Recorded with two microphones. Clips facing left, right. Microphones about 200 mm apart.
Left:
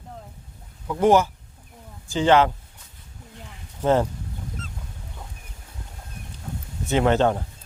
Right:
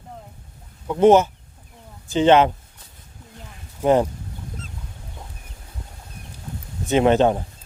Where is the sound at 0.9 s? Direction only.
20° right (ahead or behind).